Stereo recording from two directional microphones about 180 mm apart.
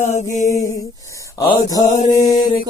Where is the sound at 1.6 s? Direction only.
20° left (ahead or behind).